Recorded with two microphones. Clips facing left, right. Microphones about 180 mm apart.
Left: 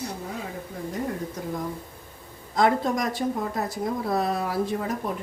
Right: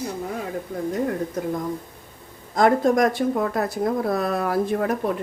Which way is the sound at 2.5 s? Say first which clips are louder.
Right 5 dB; 50° right (ahead or behind).